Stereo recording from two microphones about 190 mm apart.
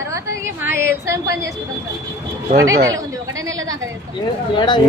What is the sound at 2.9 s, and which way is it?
Speech, 15° right (ahead or behind).